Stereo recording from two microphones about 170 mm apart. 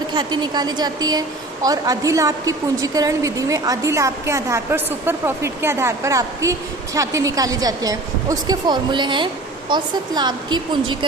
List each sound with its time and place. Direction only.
0.1 s a woman's voice: 25° right (ahead or behind)